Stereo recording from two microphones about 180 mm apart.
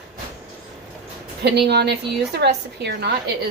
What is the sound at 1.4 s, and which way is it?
A woman's voice, 65° right (ahead or behind).